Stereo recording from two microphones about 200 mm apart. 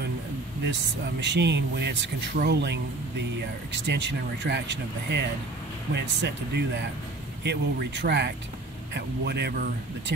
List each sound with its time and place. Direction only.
1.2 s speech: 60° right (ahead or behind)
3.8 s speech: 60° right (ahead or behind)